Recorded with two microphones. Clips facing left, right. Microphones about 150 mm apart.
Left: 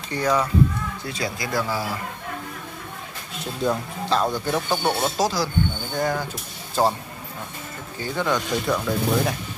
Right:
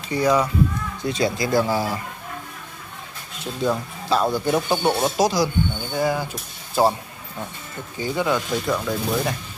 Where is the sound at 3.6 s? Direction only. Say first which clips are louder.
Right 1 dB; 5° right (ahead or behind).